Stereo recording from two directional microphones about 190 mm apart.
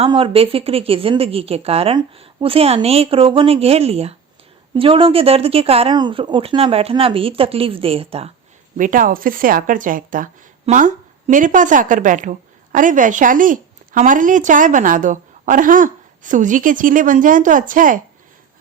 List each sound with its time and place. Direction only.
0.0 s speech: 30° right (ahead or behind)
8.8 s a woman's voice: 45° right (ahead or behind)